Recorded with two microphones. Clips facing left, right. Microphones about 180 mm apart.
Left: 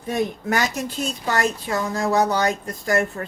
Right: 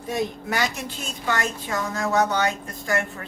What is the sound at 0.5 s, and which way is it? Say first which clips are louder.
A woman's voice: left 3 dB; 40° left (ahead or behind).